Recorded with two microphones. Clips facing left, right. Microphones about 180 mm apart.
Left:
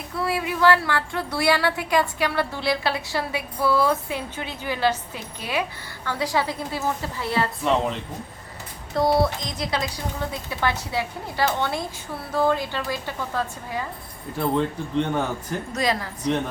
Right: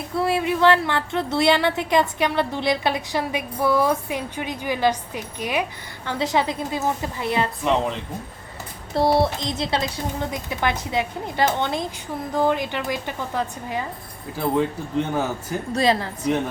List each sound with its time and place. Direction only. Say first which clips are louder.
0.2 s a woman's voice: right 3 dB; 25° right (ahead or behind)
9.0 s a woman's voice: right 1 dB; 25° right (ahead or behind)
14.3 s speech: right 1 dB; 5° right (ahead or behind)
15.7 s a woman's voice: right 5 dB; 30° right (ahead or behind)